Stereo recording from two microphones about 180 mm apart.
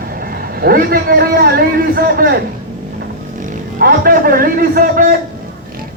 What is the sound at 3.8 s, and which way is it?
Speech, 55° right (ahead or behind).